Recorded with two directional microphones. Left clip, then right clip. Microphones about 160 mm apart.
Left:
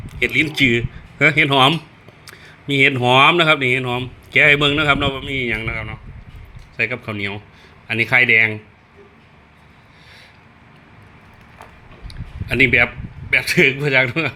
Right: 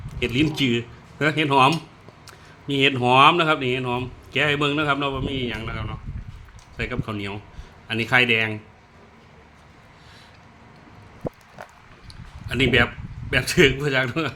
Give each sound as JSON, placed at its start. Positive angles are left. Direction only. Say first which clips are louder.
{"t": 0.2, "sound": "a man's voice", "louder": "left 6 dB", "side_deg": 20}
{"t": 12.0, "sound": "a sound", "louder": "left 7 dB", "side_deg": 15}
{"t": 13.3, "sound": "a man's voice", "louder": "left 4 dB", "side_deg": 15}